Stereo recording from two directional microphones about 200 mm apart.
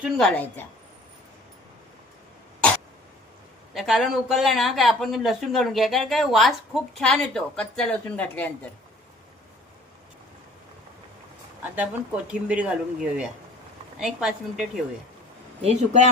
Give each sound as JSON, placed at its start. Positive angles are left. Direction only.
{"t": 0.0, "sound": "speech", "side_deg": 0}
{"t": 3.8, "sound": "speech", "side_deg": 0}
{"t": 11.8, "sound": "speech", "side_deg": -5}
{"t": 15.6, "sound": "speech", "side_deg": -35}